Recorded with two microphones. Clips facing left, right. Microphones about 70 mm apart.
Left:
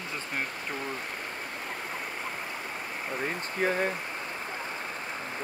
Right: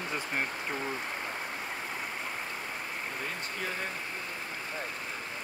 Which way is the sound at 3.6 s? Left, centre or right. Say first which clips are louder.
Left 10 dB; left.